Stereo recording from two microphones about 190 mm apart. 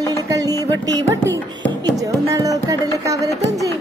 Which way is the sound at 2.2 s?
15° right (ahead or behind).